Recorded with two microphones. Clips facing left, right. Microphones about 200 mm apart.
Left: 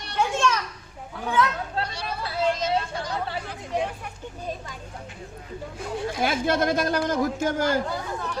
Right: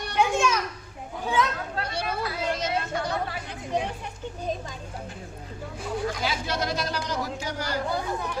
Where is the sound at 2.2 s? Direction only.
30° left (ahead or behind).